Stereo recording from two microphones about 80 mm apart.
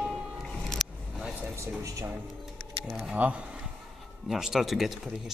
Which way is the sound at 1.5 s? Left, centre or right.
Right.